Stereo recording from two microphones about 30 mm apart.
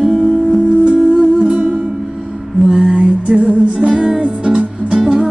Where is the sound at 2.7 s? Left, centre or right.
Right.